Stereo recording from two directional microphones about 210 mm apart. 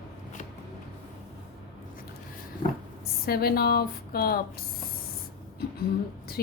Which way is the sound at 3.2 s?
45° left (ahead or behind).